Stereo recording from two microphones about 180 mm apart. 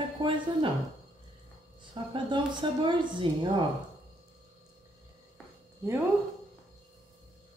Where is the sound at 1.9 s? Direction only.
25° right (ahead or behind).